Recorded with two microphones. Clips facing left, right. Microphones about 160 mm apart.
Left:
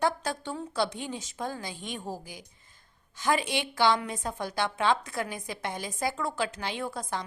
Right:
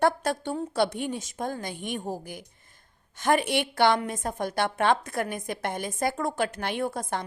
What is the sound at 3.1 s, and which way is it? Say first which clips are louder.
A woman's voice: right 4 dB; 55° right (ahead or behind).